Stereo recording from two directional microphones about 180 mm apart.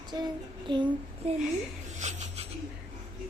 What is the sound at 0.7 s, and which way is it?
Child singing, 25° right (ahead or behind).